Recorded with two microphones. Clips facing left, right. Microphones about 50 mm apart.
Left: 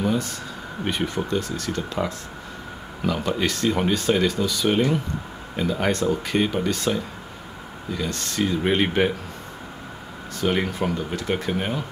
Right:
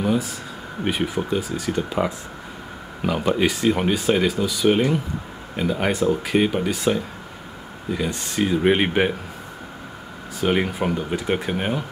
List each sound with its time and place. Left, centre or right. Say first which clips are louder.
0.0 s a sound: right 2 dB; centre
0.8 s speech: right 2 dB; centre
10.4 s speech: right 2 dB; centre